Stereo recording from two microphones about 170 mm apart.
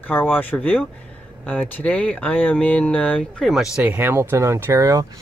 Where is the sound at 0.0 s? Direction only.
10° left (ahead or behind).